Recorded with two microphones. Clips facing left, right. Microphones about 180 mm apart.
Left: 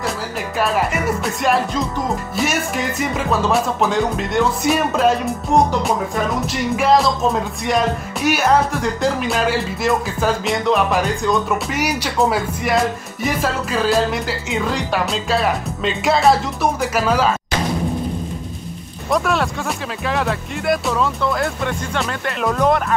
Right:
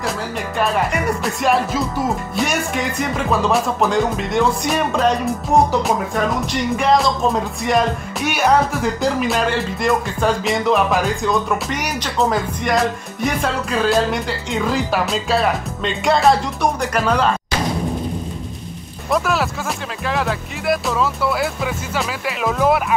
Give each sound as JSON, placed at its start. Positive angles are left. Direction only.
{"t": 0.6, "sound": "speech", "side_deg": 5}
{"t": 19.0, "sound": "speech", "side_deg": 0}